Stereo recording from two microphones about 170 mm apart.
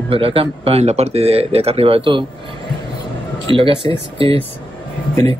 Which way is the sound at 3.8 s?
20° left (ahead or behind).